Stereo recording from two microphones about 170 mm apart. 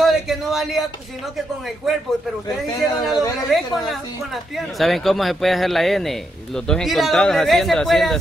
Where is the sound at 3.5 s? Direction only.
Centre (ahead or behind).